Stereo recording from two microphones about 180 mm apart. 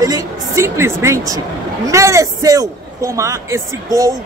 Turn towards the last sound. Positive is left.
turn(degrees=-20)  # may be behind; listen again after turning